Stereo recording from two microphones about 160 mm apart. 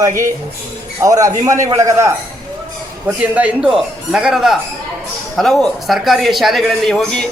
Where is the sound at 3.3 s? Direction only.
5° right (ahead or behind).